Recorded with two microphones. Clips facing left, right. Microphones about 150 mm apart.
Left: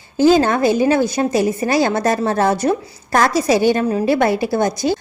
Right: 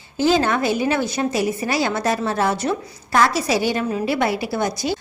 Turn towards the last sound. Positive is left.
turn(degrees=45)  # may be behind; listen again after turning